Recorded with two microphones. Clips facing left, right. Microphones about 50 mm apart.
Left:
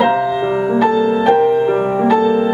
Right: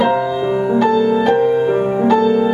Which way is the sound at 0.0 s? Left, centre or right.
Centre.